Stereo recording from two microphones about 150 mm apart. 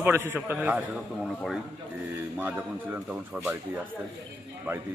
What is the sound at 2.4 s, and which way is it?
Speech, 10° right (ahead or behind).